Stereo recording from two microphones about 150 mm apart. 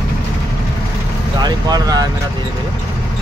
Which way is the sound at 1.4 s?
25° right (ahead or behind).